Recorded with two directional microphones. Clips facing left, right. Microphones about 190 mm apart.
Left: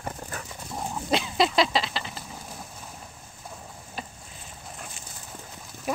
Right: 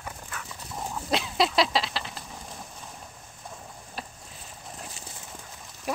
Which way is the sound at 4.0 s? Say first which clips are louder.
Left 1 dB; centre (ahead or behind).